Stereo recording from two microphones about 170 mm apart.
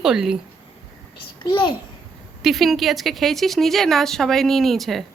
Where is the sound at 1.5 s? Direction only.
25° left (ahead or behind).